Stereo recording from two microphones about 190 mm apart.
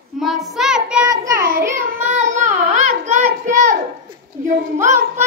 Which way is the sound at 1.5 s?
40° right (ahead or behind).